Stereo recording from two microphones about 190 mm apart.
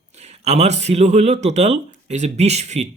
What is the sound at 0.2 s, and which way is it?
Speech, 35° right (ahead or behind).